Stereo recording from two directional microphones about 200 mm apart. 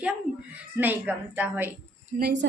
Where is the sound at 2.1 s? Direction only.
55° right (ahead or behind).